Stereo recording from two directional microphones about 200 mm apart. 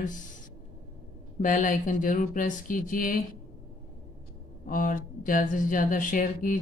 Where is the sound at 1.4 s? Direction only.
40° left (ahead or behind).